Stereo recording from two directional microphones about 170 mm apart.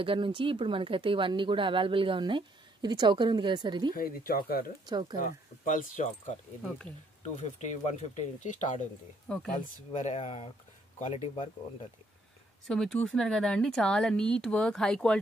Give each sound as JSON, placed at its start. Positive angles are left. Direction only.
{"t": 0.0, "sound": "speech", "side_deg": -30}
{"t": 3.9, "sound": "speech", "side_deg": 60}
{"t": 4.8, "sound": "speech", "side_deg": -25}
{"t": 5.1, "sound": "speech", "side_deg": 55}
{"t": 9.3, "sound": "speech", "side_deg": 5}
{"t": 9.8, "sound": "speech", "side_deg": 45}
{"t": 12.6, "sound": "speech", "side_deg": 0}